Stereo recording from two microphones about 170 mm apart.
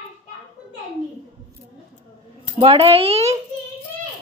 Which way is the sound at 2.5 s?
30° right (ahead or behind).